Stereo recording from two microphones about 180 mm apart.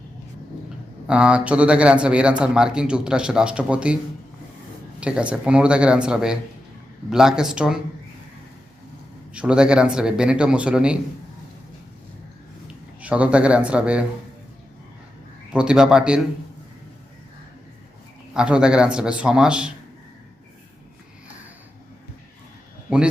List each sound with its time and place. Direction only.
1.0 s speech: 5° right (ahead or behind)
4.9 s speech: 5° right (ahead or behind)
9.3 s speech: 5° right (ahead or behind)
12.6 s speech: 5° right (ahead or behind)
15.5 s speech: 5° right (ahead or behind)
18.3 s speech: 5° right (ahead or behind)